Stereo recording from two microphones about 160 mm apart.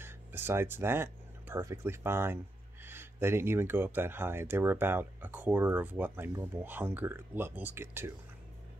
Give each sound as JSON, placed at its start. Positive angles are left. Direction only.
{"t": 0.0, "sound": "speech", "side_deg": -15}